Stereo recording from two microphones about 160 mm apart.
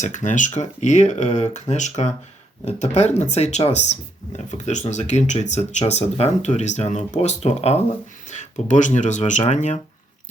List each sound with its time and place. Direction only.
0.0 s speech: 50° left (ahead or behind)